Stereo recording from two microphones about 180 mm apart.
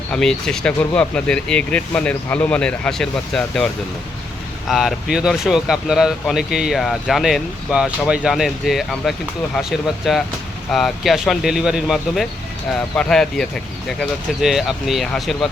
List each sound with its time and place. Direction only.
0.1 s speech: 5° left (ahead or behind)
4.7 s speech: centre (ahead or behind)